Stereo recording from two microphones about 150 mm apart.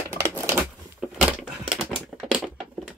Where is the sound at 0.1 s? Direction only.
15° right (ahead or behind).